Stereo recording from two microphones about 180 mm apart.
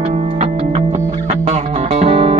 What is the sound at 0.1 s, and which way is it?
Music, 35° right (ahead or behind).